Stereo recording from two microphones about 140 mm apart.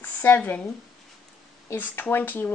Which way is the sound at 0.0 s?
10° left (ahead or behind).